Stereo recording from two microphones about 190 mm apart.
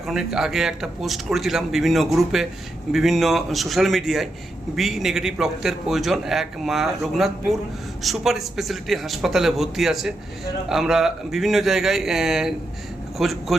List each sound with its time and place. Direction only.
0.1 s a man's voice: 5° right (ahead or behind)